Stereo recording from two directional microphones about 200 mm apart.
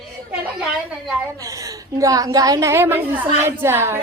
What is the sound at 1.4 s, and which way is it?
A woman's voice, 15° right (ahead or behind).